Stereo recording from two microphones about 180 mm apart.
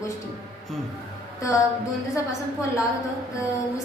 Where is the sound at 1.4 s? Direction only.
15° left (ahead or behind).